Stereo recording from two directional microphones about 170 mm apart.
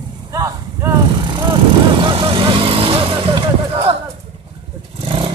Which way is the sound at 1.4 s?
30° right (ahead or behind).